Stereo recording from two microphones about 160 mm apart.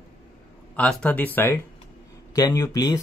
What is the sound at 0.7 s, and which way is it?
Speech, 10° left (ahead or behind).